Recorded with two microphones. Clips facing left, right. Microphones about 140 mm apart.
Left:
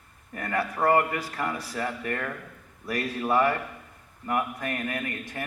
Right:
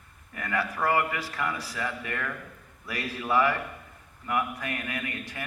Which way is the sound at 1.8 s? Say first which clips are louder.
Left 2 dB; 35° left (ahead or behind).